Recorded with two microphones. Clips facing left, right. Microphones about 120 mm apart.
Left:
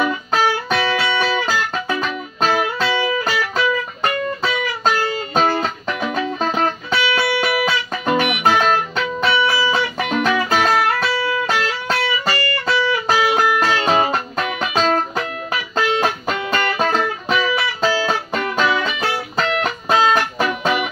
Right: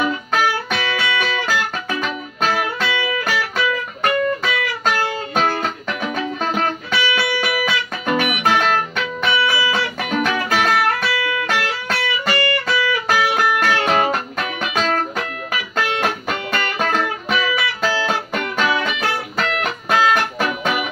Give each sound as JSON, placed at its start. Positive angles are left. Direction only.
{"t": 0.3, "sound": "music", "side_deg": 35}
{"t": 13.1, "sound": "music", "side_deg": 15}